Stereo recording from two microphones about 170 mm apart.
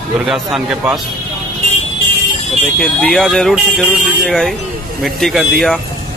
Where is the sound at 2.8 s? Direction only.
Centre (ahead or behind).